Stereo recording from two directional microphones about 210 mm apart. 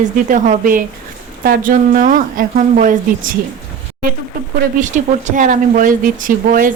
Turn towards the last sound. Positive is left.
turn(degrees=-40)  # may be behind; listen again after turning